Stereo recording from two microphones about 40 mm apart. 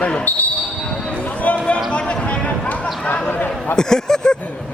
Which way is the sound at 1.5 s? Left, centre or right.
Left.